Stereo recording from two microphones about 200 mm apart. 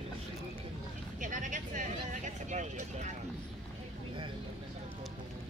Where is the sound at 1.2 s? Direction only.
40° right (ahead or behind).